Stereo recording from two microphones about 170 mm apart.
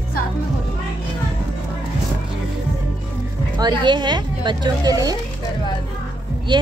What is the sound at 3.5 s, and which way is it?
Speech, 25° right (ahead or behind).